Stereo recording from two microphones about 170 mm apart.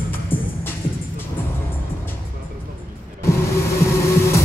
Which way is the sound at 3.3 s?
15° left (ahead or behind).